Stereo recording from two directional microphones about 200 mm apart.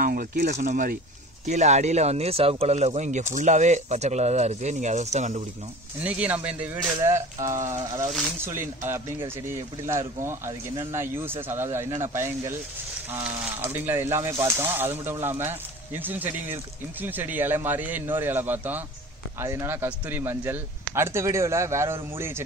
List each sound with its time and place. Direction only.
0.0 s speech: 45° right (ahead or behind)
5.9 s speech: 5° right (ahead or behind)